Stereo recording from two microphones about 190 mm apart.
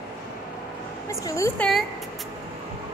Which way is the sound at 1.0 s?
15° left (ahead or behind).